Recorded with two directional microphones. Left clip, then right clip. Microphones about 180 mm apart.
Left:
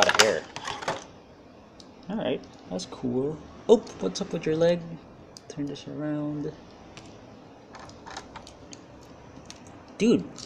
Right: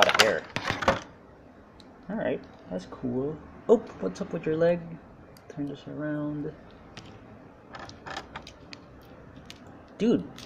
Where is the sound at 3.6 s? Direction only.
10° left (ahead or behind).